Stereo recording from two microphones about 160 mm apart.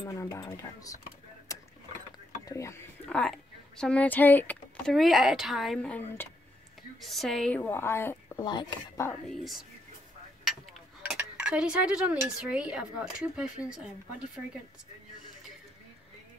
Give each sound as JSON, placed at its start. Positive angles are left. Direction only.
{"t": 0.0, "sound": "speech", "side_deg": 20}
{"t": 1.5, "sound": "a sound", "side_deg": 20}
{"t": 2.4, "sound": "speech", "side_deg": 20}
{"t": 3.1, "sound": "speech", "side_deg": 5}
{"t": 4.9, "sound": "a woman's voice", "side_deg": 0}
{"t": 8.5, "sound": "speech", "side_deg": 25}
{"t": 9.3, "sound": "speech", "side_deg": 0}